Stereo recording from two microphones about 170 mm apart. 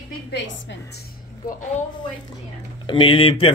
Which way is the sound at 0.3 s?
90° left.